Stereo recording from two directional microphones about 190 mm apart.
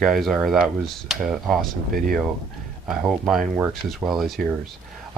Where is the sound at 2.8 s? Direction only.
5° right (ahead or behind).